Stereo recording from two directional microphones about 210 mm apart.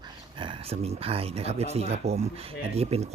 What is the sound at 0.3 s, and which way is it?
A man's voice, 25° right (ahead or behind).